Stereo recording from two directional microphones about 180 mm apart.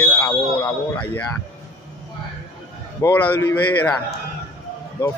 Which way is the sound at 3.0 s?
10° left (ahead or behind).